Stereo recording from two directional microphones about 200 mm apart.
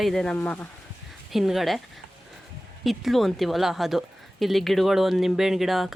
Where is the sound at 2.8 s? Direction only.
Centre (ahead or behind).